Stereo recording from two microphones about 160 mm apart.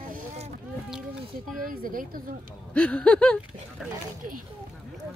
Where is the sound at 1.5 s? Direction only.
60° right (ahead or behind).